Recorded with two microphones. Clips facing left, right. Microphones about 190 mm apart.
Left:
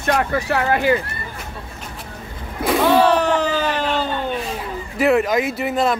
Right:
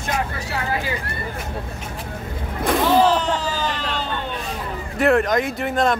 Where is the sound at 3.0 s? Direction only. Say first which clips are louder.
Left 3 dB; 65° left (ahead or behind).